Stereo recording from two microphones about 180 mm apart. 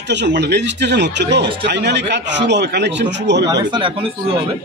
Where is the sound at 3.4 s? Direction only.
25° right (ahead or behind).